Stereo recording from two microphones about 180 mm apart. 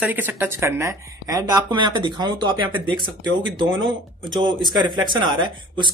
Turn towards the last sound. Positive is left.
turn(degrees=-25)  # may be behind; listen again after turning